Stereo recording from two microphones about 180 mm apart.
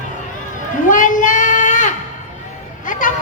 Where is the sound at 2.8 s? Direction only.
45° left (ahead or behind).